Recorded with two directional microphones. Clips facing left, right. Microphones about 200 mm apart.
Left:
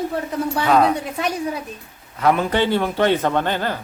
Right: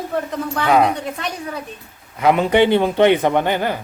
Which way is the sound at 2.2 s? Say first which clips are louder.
Right 4 dB; 15° right (ahead or behind).